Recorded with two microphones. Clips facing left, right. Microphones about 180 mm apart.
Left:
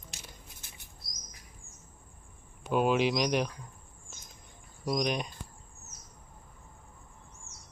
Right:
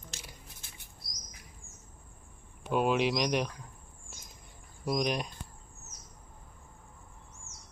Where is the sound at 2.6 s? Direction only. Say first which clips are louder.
Left 1 dB; centre (ahead or behind).